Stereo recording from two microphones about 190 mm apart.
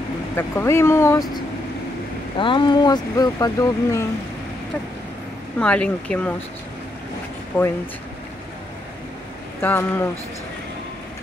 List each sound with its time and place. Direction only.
0.4 s speech: 15° left (ahead or behind)
5.6 s speech: 5° left (ahead or behind)
7.5 s speech: 10° left (ahead or behind)
9.6 s speech: 10° left (ahead or behind)